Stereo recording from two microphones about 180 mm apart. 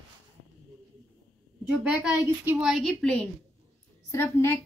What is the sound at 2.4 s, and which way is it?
A woman's voice, centre (ahead or behind).